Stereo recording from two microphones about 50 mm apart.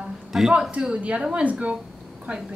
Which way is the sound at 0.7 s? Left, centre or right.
Right.